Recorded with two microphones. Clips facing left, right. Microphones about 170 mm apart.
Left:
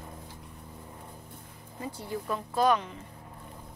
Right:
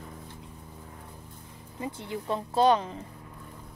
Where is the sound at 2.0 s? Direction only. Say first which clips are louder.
Right 1 dB; 25° right (ahead or behind).